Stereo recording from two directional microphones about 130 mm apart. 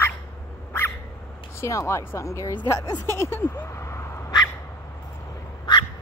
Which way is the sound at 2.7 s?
30° left (ahead or behind).